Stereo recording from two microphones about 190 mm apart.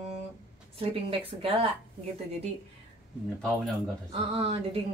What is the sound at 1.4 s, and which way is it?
Speech, 30° right (ahead or behind).